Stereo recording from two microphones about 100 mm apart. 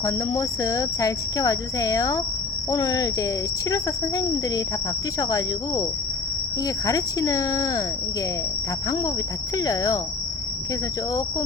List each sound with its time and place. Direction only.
0.0 s speech: 35° left (ahead or behind)
6.8 s speech: 35° left (ahead or behind)
9.6 s speech: 35° left (ahead or behind)